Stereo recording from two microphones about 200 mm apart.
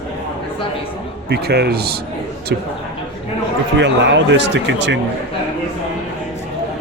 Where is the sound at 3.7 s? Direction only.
60° right (ahead or behind).